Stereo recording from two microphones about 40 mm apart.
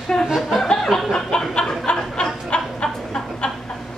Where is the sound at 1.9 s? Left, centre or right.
Left.